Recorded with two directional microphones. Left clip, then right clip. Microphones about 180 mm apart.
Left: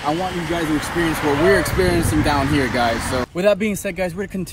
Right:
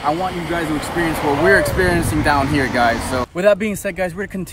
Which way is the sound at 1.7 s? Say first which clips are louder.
Right 1 dB; 15° right (ahead or behind).